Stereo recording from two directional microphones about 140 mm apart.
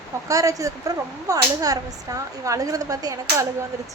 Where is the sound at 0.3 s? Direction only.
25° right (ahead or behind).